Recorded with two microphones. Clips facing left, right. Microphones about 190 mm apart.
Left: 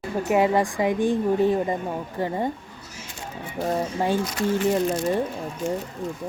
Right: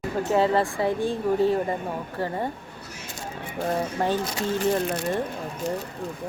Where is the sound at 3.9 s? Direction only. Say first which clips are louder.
Left 2 dB; 10° left (ahead or behind).